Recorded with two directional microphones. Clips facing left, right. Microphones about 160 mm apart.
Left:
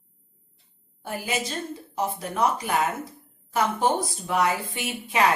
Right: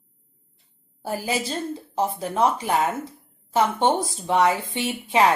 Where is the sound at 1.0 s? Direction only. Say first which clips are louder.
Right 3 dB; 35° right (ahead or behind).